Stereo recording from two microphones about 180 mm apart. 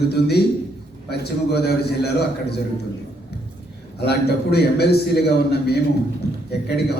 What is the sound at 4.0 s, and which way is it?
A man's voice, 65° left (ahead or behind).